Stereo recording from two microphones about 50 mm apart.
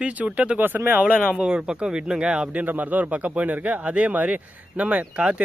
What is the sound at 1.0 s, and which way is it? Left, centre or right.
Speech, right.